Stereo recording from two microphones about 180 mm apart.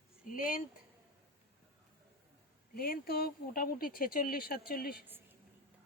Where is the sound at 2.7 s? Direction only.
55° left (ahead or behind).